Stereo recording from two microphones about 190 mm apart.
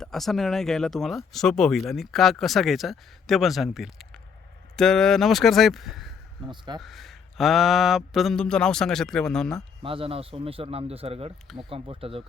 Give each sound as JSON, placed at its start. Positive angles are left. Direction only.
{"t": 0.0, "sound": "speech", "side_deg": 0}
{"t": 9.8, "sound": "a man's voice", "side_deg": -30}